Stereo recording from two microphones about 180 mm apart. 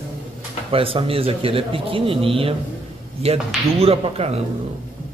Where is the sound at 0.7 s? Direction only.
30° right (ahead or behind).